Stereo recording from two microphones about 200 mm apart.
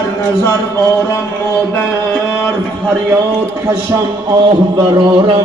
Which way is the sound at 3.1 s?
15° right (ahead or behind).